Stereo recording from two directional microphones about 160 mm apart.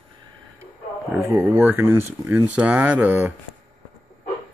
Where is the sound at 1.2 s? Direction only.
15° right (ahead or behind).